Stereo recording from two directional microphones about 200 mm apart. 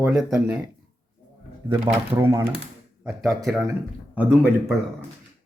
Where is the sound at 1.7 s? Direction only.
10° right (ahead or behind).